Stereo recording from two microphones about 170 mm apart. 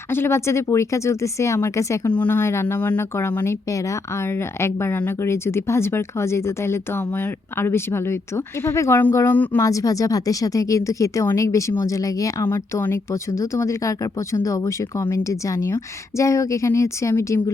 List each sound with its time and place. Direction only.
0.1 s speech: 15° left (ahead or behind)